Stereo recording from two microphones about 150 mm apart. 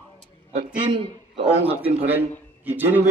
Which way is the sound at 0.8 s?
35° right (ahead or behind).